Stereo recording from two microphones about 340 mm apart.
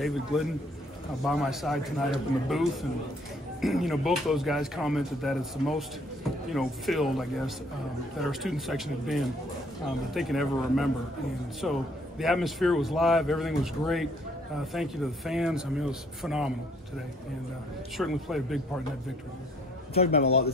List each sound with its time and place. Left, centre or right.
0.0 s a man's voice: centre
17.9 s a man's voice: centre
19.9 s a man's voice: centre